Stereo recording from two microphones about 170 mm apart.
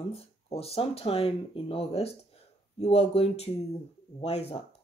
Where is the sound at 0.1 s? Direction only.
35° left (ahead or behind).